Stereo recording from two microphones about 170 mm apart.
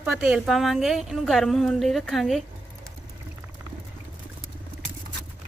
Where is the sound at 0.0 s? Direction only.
Centre (ahead or behind).